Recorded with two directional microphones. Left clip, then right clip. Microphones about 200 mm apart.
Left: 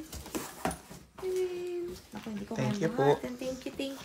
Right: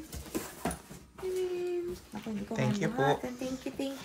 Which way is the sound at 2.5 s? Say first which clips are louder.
Even; 15° left (ahead or behind).